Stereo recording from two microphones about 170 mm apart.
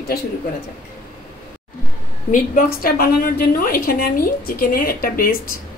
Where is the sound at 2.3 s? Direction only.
55° left (ahead or behind).